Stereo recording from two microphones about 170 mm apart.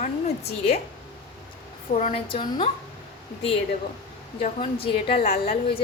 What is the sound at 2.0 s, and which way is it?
Speech, 40° left (ahead or behind).